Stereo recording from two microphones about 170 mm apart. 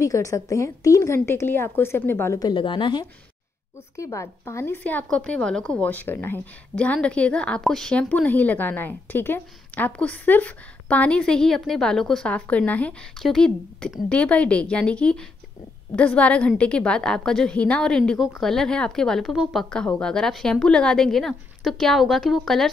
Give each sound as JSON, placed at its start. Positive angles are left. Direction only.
{"t": 0.0, "sound": "a woman's voice", "side_deg": 20}